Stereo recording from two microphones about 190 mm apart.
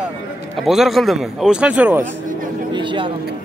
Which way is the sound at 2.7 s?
25° right (ahead or behind).